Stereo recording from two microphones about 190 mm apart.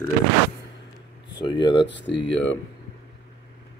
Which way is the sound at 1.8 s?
70° left (ahead or behind).